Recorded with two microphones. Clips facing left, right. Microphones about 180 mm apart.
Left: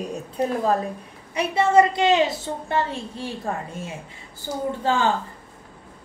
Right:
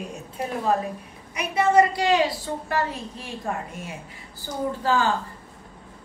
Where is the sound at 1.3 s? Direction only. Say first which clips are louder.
Left 2 dB; 25° left (ahead or behind).